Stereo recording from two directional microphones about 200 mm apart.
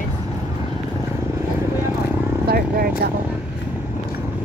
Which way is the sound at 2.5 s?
50° right (ahead or behind).